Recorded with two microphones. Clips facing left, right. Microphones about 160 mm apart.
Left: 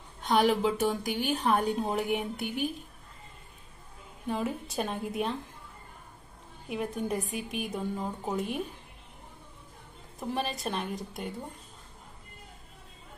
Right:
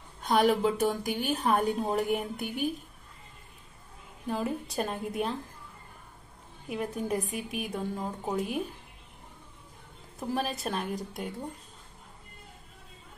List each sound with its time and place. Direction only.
0.2 s a woman's voice: centre (ahead or behind)
4.3 s a woman's voice: centre (ahead or behind)
6.7 s a woman's voice: centre (ahead or behind)
10.2 s a woman's voice: 5° right (ahead or behind)